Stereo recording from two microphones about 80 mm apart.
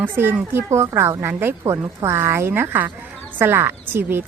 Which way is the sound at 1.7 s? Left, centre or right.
Right.